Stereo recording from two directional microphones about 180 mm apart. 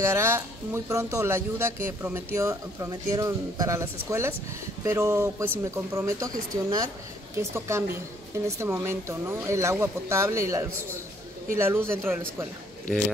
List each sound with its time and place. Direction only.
0.0 s speech: 15° right (ahead or behind)